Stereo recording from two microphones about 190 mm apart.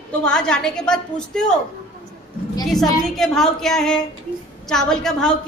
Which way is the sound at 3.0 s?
Centre (ahead or behind).